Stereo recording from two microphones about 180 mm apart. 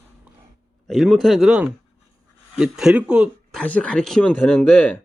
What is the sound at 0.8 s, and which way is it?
A man's voice, centre (ahead or behind).